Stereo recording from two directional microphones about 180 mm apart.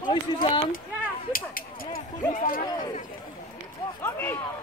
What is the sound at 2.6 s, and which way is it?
Speech, 20° left (ahead or behind).